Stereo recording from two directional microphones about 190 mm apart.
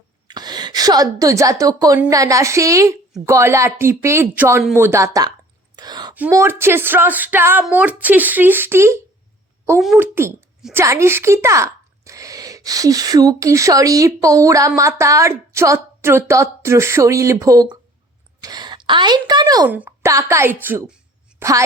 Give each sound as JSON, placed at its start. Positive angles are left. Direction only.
{"t": 0.3, "sound": "a woman's voice", "side_deg": -20}
{"t": 5.7, "sound": "a sound", "side_deg": -20}
{"t": 6.1, "sound": "a woman's voice", "side_deg": -10}
{"t": 9.8, "sound": "speech", "side_deg": 0}
{"t": 10.6, "sound": "a child's voice", "side_deg": -10}